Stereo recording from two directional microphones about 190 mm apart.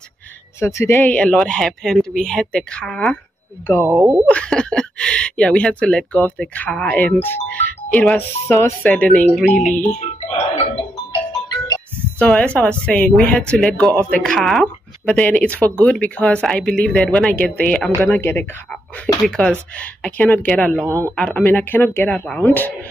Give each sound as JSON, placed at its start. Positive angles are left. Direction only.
{"t": 0.6, "sound": "speech", "side_deg": 15}
{"t": 3.8, "sound": "speech", "side_deg": -10}
{"t": 4.3, "sound": "speech", "side_deg": 5}
{"t": 9.5, "sound": "speech", "side_deg": 40}
{"t": 11.4, "sound": "music", "side_deg": 20}
{"t": 12.2, "sound": "speech", "side_deg": 5}
{"t": 20.8, "sound": "speech", "side_deg": -15}
{"t": 21.2, "sound": "speech", "side_deg": 5}